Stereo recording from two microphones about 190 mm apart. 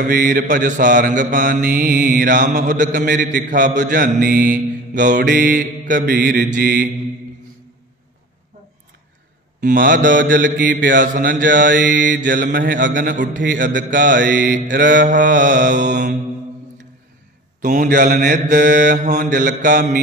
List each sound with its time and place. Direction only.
0.0 s mantra: 45° right (ahead or behind)
9.6 s mantra: 45° right (ahead or behind)
17.6 s mantra: 45° right (ahead or behind)